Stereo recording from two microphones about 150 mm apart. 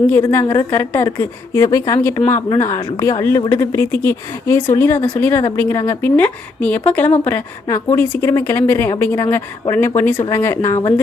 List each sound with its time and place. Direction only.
0.1 s a woman's voice: 15° left (ahead or behind)